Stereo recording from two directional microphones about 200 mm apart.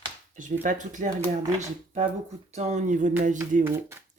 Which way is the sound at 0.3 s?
40° right (ahead or behind).